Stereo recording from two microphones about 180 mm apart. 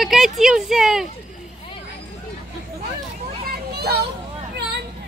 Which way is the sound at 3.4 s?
60° right (ahead or behind).